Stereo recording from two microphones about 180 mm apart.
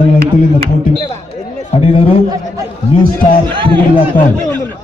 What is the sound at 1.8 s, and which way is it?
Speech, 30° left (ahead or behind).